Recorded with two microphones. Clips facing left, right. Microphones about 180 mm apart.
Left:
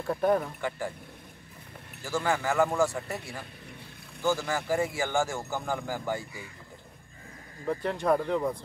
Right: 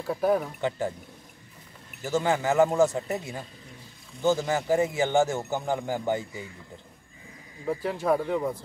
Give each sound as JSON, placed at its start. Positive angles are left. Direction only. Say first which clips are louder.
{"t": 0.0, "sound": "speech", "louder": "right 1 dB", "side_deg": -5}
{"t": 0.6, "sound": "speech", "louder": "right 5 dB", "side_deg": -20}
{"t": 2.0, "sound": "speech", "louder": "right 4 dB", "side_deg": -20}
{"t": 7.6, "sound": "speech", "louder": "right 1 dB", "side_deg": -5}